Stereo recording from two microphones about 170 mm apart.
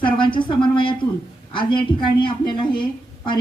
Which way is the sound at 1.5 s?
30° left (ahead or behind).